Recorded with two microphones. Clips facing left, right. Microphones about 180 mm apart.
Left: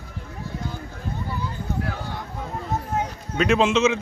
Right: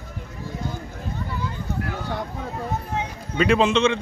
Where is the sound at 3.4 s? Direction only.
Centre (ahead or behind).